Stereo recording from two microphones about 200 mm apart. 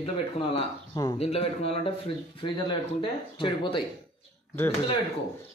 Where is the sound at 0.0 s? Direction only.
30° left (ahead or behind).